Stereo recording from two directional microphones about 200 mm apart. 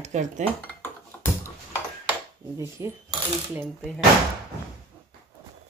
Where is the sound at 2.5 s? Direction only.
15° right (ahead or behind).